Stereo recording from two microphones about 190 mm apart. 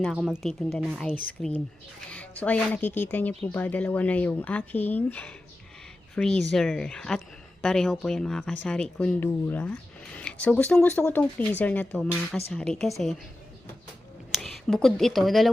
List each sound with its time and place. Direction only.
0.0 s speech: centre (ahead or behind)
14.3 s speech: centre (ahead or behind)